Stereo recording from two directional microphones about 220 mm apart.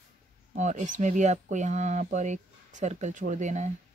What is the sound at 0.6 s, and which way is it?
Speech, 35° right (ahead or behind).